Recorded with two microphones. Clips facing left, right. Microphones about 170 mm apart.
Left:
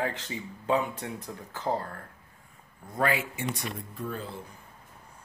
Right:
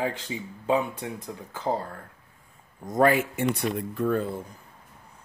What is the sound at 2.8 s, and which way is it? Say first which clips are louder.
Speech: right 7 dB; 40° right (ahead or behind).